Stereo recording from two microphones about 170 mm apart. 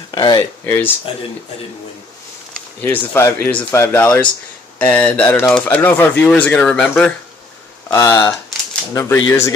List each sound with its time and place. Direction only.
0.1 s speech: 25° left (ahead or behind)
2.8 s speech: 10° left (ahead or behind)
7.9 s speech: 15° left (ahead or behind)